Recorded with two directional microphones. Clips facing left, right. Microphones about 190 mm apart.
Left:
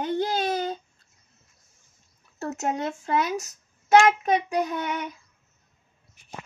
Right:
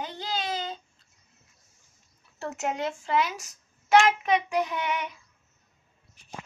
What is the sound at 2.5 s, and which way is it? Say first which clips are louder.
Speech: left 2 dB; 40° left (ahead or behind).